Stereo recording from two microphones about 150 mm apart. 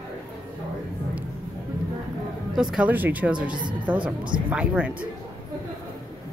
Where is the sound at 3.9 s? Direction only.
30° right (ahead or behind).